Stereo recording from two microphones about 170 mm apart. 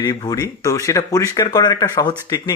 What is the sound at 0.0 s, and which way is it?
Speech, 20° left (ahead or behind).